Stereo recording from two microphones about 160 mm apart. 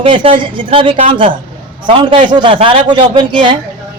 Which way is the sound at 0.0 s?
35° right (ahead or behind).